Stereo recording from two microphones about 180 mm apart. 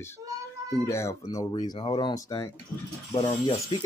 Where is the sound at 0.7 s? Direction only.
15° left (ahead or behind).